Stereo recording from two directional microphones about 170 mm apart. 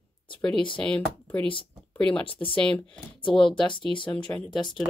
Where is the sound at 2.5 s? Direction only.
5° left (ahead or behind).